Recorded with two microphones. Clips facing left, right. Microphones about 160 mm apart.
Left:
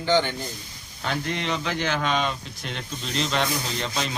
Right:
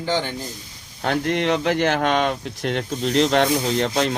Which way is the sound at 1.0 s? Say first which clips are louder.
Right 7 dB; 60° right (ahead or behind).